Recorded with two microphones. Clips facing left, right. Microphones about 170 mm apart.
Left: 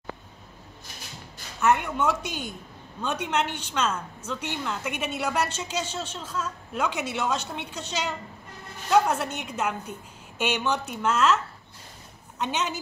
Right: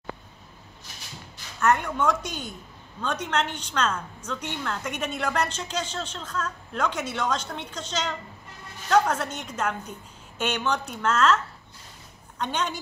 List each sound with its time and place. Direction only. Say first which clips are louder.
1.6 s a woman's voice: even; 5° left (ahead or behind)